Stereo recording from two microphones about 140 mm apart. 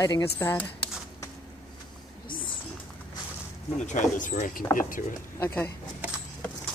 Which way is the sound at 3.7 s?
60° left (ahead or behind).